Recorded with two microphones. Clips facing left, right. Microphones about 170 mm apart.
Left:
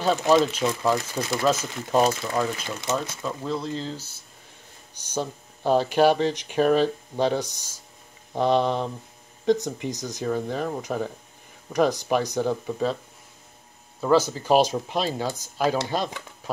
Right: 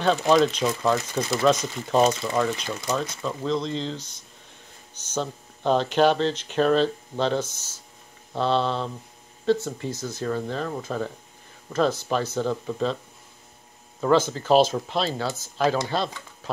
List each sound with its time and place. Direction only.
0.0 s speech: 5° left (ahead or behind)
14.3 s speech: 15° left (ahead or behind)